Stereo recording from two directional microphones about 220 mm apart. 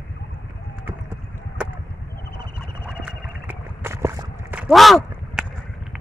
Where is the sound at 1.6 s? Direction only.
5° right (ahead or behind).